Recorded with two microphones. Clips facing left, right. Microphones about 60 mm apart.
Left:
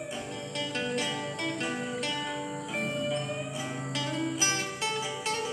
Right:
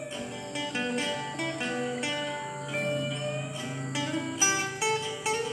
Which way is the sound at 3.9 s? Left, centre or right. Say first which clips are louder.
Right 1 dB; centre.